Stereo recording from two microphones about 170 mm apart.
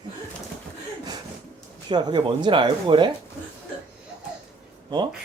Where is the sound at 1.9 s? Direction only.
25° right (ahead or behind).